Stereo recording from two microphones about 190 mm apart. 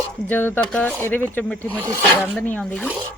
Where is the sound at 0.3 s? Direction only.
10° left (ahead or behind).